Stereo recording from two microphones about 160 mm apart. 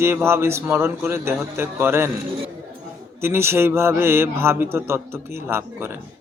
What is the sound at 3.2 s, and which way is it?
A man's voice, 15° right (ahead or behind).